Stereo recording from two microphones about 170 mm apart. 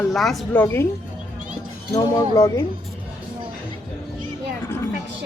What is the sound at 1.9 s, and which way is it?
Speech, 20° left (ahead or behind).